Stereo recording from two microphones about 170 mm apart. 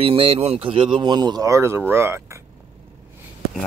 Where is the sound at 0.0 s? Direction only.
35° right (ahead or behind); by 2.4 s 15° right (ahead or behind).